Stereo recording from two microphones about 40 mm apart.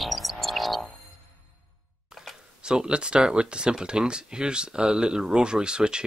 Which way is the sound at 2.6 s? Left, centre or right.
Right.